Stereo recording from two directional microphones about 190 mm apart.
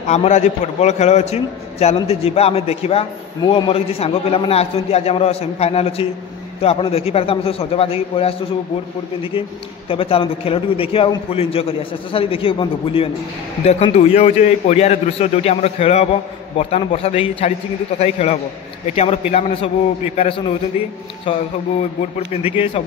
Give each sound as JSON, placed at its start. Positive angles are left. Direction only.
{"t": 0.0, "sound": "a man's voice", "side_deg": 35}
{"t": 9.8, "sound": "a man's voice", "side_deg": 30}